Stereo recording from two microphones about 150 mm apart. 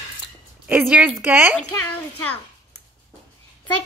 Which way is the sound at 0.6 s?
5° right (ahead or behind).